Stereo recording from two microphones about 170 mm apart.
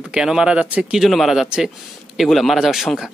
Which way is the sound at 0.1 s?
5° right (ahead or behind).